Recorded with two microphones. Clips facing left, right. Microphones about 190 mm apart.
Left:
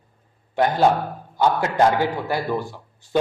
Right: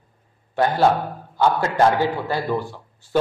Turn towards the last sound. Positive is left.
turn(degrees=15)  # may be behind; listen again after turning